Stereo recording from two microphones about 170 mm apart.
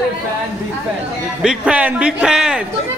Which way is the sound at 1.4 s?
5° right (ahead or behind).